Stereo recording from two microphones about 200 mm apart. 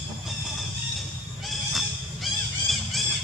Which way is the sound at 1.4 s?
Centre (ahead or behind).